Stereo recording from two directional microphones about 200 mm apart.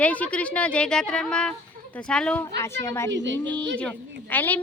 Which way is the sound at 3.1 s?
65° right (ahead or behind).